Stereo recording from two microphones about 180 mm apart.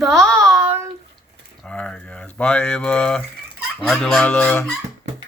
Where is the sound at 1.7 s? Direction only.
5° left (ahead or behind).